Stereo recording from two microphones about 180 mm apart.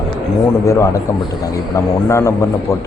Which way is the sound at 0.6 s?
20° left (ahead or behind).